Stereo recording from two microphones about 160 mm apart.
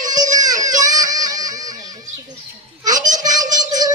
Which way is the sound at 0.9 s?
20° right (ahead or behind).